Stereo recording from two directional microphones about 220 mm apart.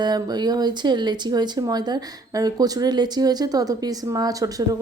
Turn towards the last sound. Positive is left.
turn(degrees=-15)  # may be behind; listen again after turning